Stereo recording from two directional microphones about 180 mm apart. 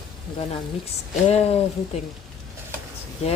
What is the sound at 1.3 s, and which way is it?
Speech, 35° left (ahead or behind).